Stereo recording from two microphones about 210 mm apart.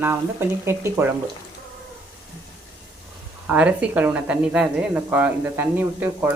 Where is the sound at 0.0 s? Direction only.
10° right (ahead or behind).